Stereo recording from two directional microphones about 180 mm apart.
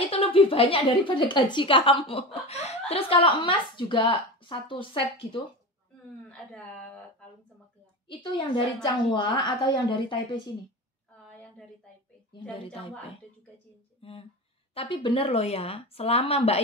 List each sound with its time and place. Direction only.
0.1 s speech: 30° left (ahead or behind)
6.2 s a woman's voice: 5° left (ahead or behind)
8.1 s speech: 25° left (ahead or behind)
12.3 s speech: 25° left (ahead or behind)
14.0 s speech: 30° left (ahead or behind)